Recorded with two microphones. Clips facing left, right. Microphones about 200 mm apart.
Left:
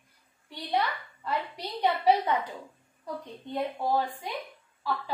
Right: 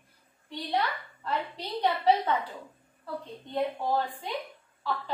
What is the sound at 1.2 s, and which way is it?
A woman's voice, 10° left (ahead or behind).